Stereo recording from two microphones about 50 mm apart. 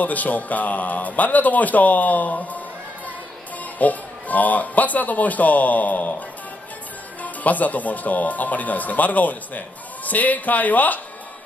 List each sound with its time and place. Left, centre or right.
0.0 s a man's voice: left
3.7 s a man's voice: left
7.4 s a man's voice: left